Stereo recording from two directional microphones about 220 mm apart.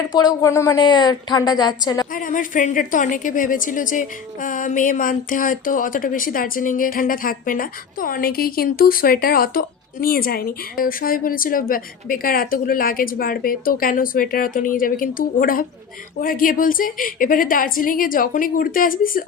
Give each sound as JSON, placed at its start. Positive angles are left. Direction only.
{"t": 0.1, "sound": "a woman's voice", "side_deg": 20}
{"t": 2.1, "sound": "a woman's voice", "side_deg": 35}